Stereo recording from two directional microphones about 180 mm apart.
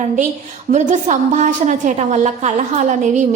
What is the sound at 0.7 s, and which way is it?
A woman's voice, 40° right (ahead or behind).